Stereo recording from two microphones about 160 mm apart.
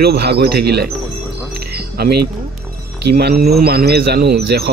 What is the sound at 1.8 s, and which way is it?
Music, 85° right.